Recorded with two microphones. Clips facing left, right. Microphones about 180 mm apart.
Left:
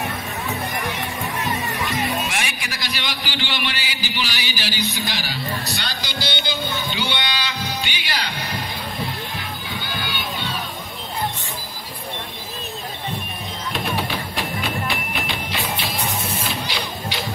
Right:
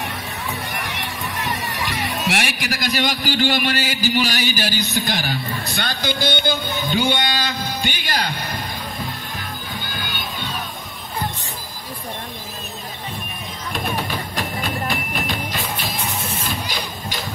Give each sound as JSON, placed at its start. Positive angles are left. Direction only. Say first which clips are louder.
{"t": 2.7, "sound": "speech", "louder": "right 7 dB", "side_deg": -45}
{"t": 9.8, "sound": "crowd", "louder": "left 2 dB", "side_deg": -45}
{"t": 13.9, "sound": "music", "louder": "even", "side_deg": -45}